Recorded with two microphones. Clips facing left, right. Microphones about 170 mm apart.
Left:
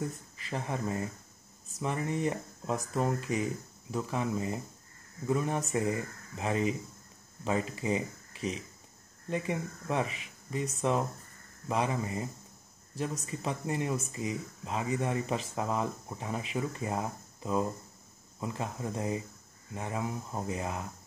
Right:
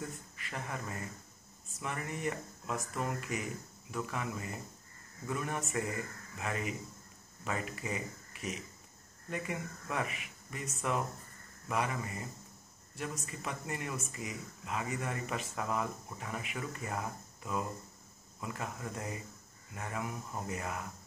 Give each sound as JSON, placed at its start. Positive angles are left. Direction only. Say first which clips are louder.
{"t": 0.1, "sound": "speech", "louder": "left 6 dB", "side_deg": 30}